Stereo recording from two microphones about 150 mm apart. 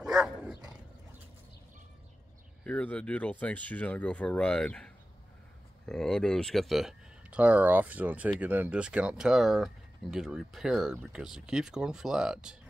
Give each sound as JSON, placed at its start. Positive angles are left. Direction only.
{"t": 0.0, "sound": "dog", "side_deg": -5}
{"t": 2.6, "sound": "speech", "side_deg": 10}